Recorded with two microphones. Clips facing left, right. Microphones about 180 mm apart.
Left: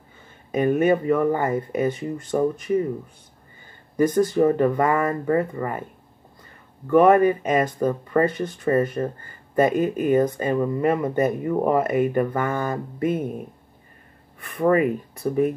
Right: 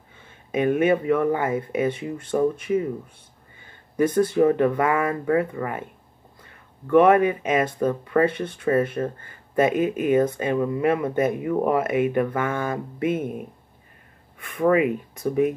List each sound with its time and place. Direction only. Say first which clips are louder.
0.5 s speech: left 1 dB; 5° right (ahead or behind)
3.9 s speech: left 1 dB; 5° right (ahead or behind)
6.9 s speech: left 1 dB; centre (ahead or behind)
14.4 s speech: even; 5° right (ahead or behind)